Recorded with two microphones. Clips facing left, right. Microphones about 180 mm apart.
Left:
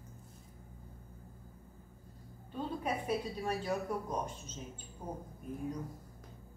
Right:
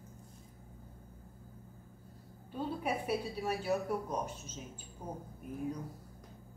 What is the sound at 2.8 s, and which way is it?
A woman's voice, 10° right (ahead or behind).